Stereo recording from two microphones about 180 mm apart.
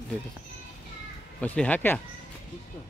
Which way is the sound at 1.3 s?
5° left (ahead or behind).